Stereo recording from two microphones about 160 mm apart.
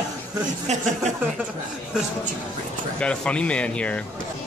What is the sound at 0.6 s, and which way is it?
Speech, 45° right (ahead or behind).